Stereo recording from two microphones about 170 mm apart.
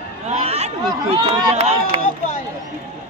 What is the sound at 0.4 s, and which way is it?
Chatter, 40° right (ahead or behind).